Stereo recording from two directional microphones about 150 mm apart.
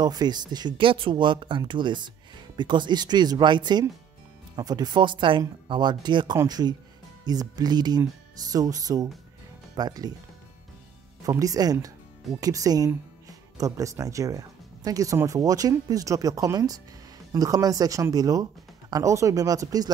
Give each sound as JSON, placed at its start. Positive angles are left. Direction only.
{"t": 0.0, "sound": "speech", "side_deg": -25}
{"t": 11.2, "sound": "speech", "side_deg": -25}